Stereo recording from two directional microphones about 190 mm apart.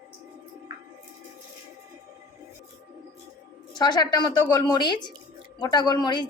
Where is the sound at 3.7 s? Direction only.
20° left (ahead or behind).